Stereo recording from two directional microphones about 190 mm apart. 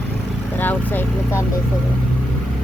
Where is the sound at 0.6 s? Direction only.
10° left (ahead or behind).